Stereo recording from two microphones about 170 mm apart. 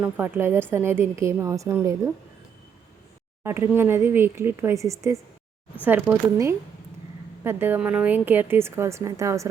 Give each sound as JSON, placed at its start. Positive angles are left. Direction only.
{"t": 0.0, "sound": "a woman's voice", "side_deg": -10}
{"t": 3.4, "sound": "a woman's voice", "side_deg": -15}